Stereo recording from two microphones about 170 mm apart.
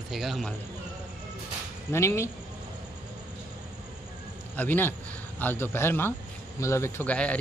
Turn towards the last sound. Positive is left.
turn(degrees=10)  # may be behind; listen again after turning